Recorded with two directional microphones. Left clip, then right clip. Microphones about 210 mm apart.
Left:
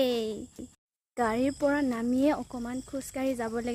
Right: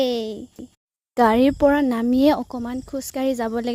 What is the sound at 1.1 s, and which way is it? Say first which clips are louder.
Speech: right 12 dB; 45° right (ahead or behind).